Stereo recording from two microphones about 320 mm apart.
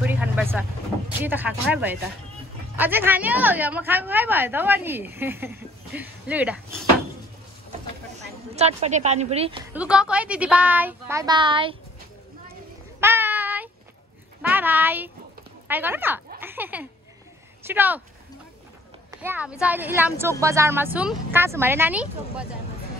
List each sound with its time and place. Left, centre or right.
0.0 s vehicle: centre
1.2 s a woman's voice: centre
8.5 s a woman's voice: centre
9.8 s a woman's voice: centre
13.0 s child singing: centre
14.4 s a sound: centre
15.7 s a woman's voice: centre
16.3 s a sound: centre
17.6 s a woman's voice: centre
19.0 s a sound: centre
19.6 s a woman's voice: centre